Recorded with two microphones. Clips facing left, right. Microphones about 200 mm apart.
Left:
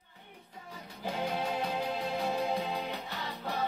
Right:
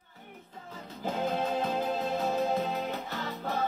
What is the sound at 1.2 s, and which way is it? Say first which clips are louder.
Music: right 3 dB; 50° right (ahead or behind).